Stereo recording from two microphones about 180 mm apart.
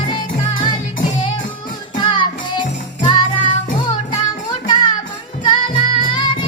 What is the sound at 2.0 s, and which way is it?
Music, 25° left (ahead or behind).